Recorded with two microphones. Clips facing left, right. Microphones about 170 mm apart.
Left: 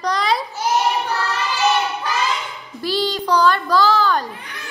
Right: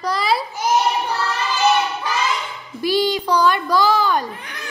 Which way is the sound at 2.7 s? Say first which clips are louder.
Right 3 dB; 15° right (ahead or behind).